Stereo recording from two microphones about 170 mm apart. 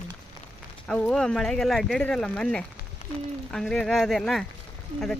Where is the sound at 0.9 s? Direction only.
5° left (ahead or behind).